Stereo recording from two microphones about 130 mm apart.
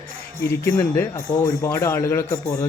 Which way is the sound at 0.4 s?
20° left (ahead or behind).